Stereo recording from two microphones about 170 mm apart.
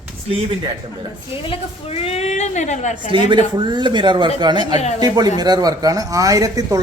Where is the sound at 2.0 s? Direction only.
35° left (ahead or behind).